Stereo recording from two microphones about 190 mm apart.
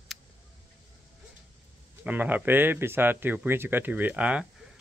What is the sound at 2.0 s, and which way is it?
Speech, 10° right (ahead or behind).